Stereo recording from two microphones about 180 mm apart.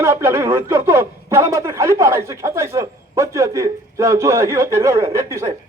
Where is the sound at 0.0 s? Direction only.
15° right (ahead or behind).